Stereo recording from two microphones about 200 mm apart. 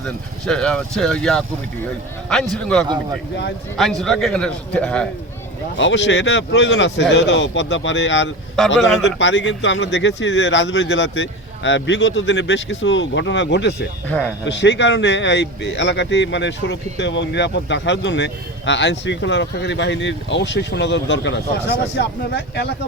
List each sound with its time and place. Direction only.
0.0 s speech: 5° left (ahead or behind)
5.7 s speech: 65° left (ahead or behind)
8.8 s speech: centre (ahead or behind)
9.0 s speech: 65° left (ahead or behind)
14.1 s speech: 10° left (ahead or behind)
14.4 s speech: 60° left (ahead or behind)